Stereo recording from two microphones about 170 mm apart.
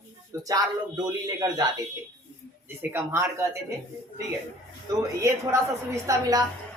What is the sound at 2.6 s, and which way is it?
Speech, 15° right (ahead or behind).